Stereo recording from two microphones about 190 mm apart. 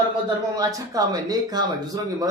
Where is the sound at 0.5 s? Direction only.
15° right (ahead or behind).